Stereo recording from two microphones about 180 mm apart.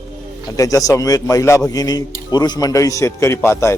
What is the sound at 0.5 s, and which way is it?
Speech, 20° left (ahead or behind).